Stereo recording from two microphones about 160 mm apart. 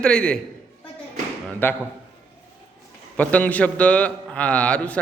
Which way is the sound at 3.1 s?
10° left (ahead or behind).